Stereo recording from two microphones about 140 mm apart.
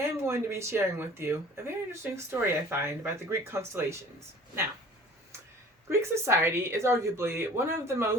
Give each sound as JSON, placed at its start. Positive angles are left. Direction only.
{"t": 0.2, "sound": "speech", "side_deg": -20}
{"t": 5.9, "sound": "a woman's voice", "side_deg": -20}